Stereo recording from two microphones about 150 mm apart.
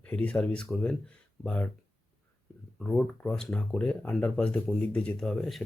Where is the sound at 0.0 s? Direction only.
10° left (ahead or behind).